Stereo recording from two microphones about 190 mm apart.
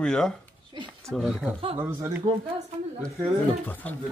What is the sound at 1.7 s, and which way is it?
Speech, 15° right (ahead or behind).